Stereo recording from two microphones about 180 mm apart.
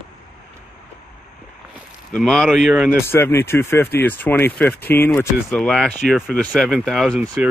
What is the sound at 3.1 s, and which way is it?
Speech, 10° left (ahead or behind).